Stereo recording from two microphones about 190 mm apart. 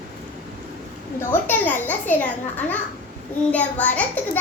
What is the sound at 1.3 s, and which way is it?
A child's voice, 10° left (ahead or behind).